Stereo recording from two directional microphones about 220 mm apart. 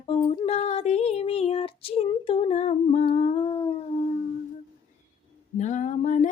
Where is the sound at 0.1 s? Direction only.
25° left (ahead or behind).